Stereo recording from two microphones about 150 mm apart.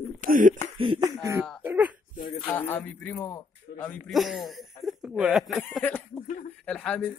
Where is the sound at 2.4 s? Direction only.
15° left (ahead or behind).